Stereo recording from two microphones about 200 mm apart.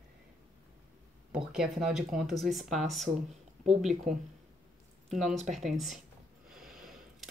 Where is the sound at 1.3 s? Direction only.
5° right (ahead or behind).